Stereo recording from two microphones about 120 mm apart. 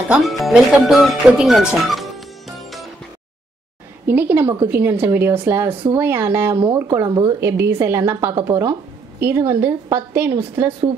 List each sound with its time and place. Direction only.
0.1 s speech: centre (ahead or behind)
4.1 s a woman's voice: 20° right (ahead or behind)
7.2 s a woman's voice: 30° right (ahead or behind)
8.2 s a woman's voice: 35° right (ahead or behind)
8.5 s a woman's voice: 25° right (ahead or behind)